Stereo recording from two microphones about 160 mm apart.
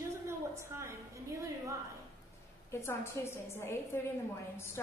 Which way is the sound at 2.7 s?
15° left (ahead or behind).